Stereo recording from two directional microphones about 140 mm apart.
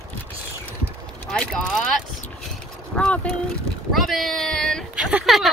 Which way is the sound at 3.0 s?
10° left (ahead or behind).